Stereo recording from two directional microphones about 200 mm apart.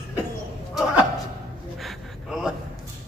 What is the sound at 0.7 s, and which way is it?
Neigh, centre (ahead or behind).